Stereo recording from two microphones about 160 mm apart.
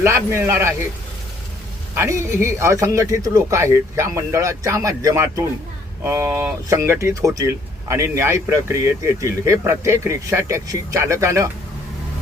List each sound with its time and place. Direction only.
0.0 s speech: 15° right (ahead or behind)
2.0 s speech: 20° right (ahead or behind)